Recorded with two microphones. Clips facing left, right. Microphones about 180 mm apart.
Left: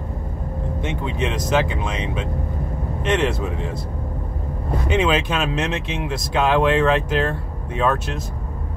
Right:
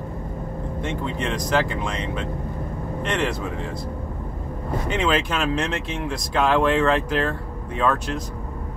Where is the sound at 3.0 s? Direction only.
20° left (ahead or behind).